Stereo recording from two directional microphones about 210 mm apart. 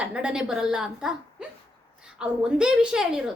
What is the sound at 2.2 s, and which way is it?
A woman's voice, 5° right (ahead or behind).